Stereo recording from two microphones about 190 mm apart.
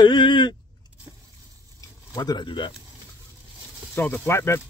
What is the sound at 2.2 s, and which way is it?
Speech, 20° left (ahead or behind).